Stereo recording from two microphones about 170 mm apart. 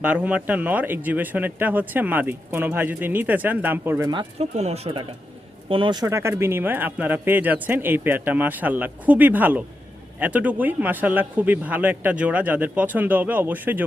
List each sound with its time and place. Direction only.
0.0 s speech: 10° right (ahead or behind)
4.1 s speech: 30° right (ahead or behind)
4.5 s speech: 40° right (ahead or behind); by 13.8 s 10° right (ahead or behind)